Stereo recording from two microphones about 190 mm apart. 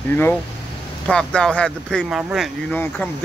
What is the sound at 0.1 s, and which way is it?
Speech, 10° left (ahead or behind).